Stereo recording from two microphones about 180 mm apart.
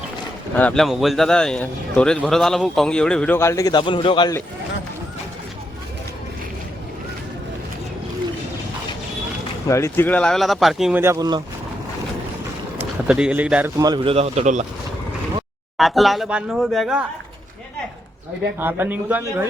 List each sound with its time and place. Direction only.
0.5 s speech: 5° left (ahead or behind); by 4.4 s 25° left (ahead or behind)
9.6 s speech: 15° left (ahead or behind); by 11.0 s centre (ahead or behind)
11.0 s speech: 20° right (ahead or behind)
12.8 s speech: 5° right (ahead or behind)
13.7 s a man's voice: 25° right (ahead or behind); by 14.6 s 40° right (ahead or behind)
15.8 s speech: centre (ahead or behind)
18.6 s speech: 10° right (ahead or behind)